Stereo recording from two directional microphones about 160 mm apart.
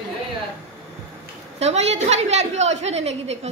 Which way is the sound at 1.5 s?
45° right (ahead or behind).